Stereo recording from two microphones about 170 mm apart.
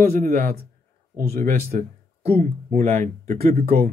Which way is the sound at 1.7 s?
40° right (ahead or behind).